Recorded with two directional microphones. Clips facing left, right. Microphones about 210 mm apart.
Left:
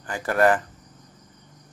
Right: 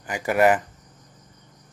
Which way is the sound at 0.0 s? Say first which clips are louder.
Right 1 dB; 15° right (ahead or behind).